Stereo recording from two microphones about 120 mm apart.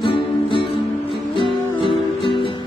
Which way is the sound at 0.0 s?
45° left (ahead or behind).